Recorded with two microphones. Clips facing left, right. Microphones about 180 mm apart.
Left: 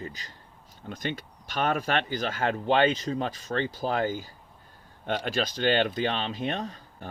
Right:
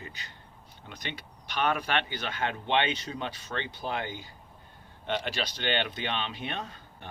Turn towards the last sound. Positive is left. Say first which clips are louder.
# left 5 dB
turn(degrees=40)  # may be behind; listen again after turning